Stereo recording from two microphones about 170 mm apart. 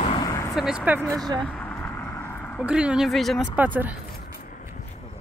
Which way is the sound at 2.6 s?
5° right (ahead or behind).